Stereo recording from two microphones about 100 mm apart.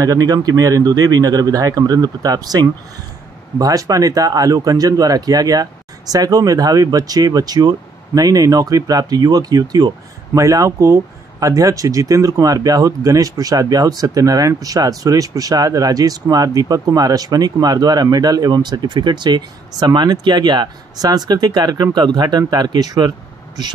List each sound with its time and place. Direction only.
0.0 s speech: 35° right (ahead or behind)